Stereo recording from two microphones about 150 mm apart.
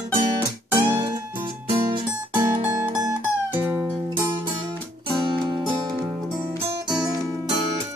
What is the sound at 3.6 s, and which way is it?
Music, 10° right (ahead or behind).